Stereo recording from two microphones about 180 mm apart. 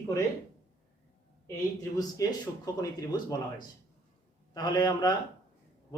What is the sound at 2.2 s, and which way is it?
A man's voice, 20° left (ahead or behind).